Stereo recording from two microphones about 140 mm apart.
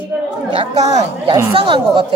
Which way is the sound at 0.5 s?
45° right (ahead or behind).